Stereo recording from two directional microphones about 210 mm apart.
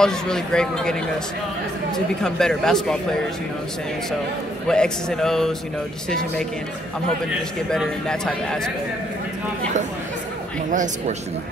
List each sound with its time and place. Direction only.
0.0 s speech: 5° left (ahead or behind)
2.2 s speech: 5° left (ahead or behind)
4.6 s speech: 5° left (ahead or behind)
7.7 s speech: 5° left (ahead or behind)
10.7 s speech: 35° right (ahead or behind)